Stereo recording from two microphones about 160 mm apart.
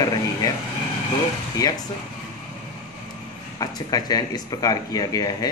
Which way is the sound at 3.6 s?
25° left (ahead or behind).